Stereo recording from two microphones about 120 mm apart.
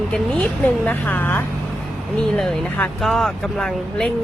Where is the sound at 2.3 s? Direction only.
5° left (ahead or behind).